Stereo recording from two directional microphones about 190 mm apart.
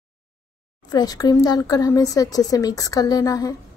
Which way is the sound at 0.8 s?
20° left (ahead or behind).